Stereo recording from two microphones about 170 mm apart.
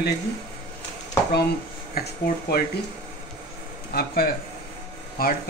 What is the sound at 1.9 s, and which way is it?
Speech, 60° left (ahead or behind).